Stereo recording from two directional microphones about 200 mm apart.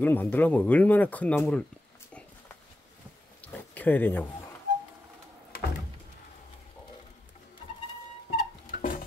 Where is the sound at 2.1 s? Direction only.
5° left (ahead or behind).